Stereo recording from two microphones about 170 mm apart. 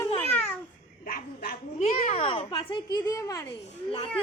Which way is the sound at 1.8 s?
40° left (ahead or behind).